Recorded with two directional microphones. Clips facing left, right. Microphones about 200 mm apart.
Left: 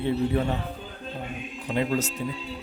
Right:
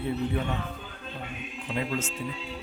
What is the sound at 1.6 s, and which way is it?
Speech, 40° left (ahead or behind).